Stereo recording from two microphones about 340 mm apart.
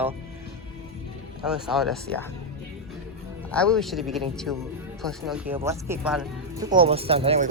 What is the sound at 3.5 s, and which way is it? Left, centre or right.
Speech, centre.